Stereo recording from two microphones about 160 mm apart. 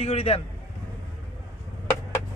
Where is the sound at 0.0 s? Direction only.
40° left (ahead or behind).